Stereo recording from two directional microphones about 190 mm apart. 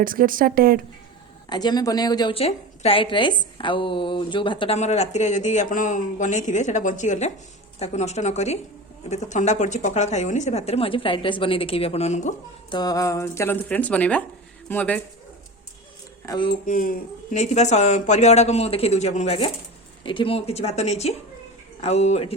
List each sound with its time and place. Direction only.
0.0 s speech: 45° right (ahead or behind)
1.5 s a woman's voice: 20° left (ahead or behind)
12.7 s speech: 20° left (ahead or behind)
16.2 s a woman's voice: 25° left (ahead or behind)
16.6 s a woman's voice: 45° left (ahead or behind)